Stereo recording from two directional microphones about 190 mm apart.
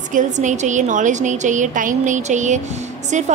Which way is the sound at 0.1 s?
40° right (ahead or behind).